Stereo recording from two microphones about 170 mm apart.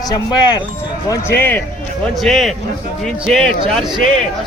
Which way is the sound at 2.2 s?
Centre (ahead or behind).